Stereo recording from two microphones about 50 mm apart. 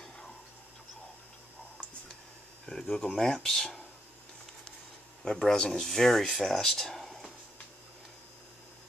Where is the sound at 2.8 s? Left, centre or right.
Left.